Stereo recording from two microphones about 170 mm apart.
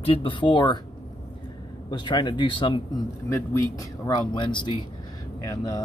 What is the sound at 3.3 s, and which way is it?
Speech, 15° left (ahead or behind).